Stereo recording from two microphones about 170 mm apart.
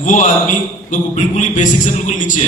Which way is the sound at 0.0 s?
50° left (ahead or behind).